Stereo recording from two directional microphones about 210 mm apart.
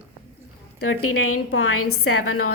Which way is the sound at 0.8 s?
85° left.